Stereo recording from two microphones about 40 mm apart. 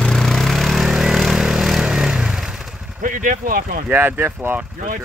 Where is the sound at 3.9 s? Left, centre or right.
Right.